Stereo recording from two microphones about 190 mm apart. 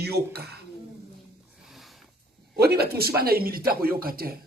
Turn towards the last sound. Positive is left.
turn(degrees=-50)  # may be behind; listen again after turning